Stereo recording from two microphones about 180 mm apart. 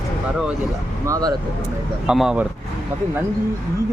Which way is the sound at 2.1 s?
5° right (ahead or behind).